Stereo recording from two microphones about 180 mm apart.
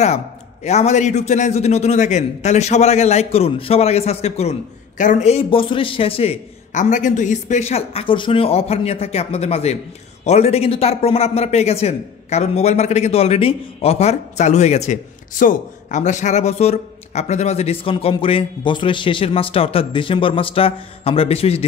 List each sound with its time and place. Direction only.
0.7 s a man's voice: 40° left (ahead or behind)